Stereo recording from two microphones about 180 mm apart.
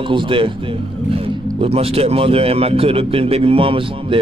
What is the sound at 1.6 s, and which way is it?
Speech, 35° right (ahead or behind).